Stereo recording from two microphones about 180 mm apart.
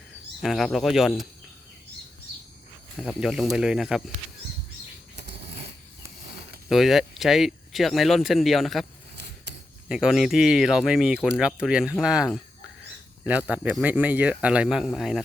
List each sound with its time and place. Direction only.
0.4 s speech: centre (ahead or behind)
3.0 s speech: centre (ahead or behind)
6.7 s speech: centre (ahead or behind)
9.9 s speech: 5° right (ahead or behind)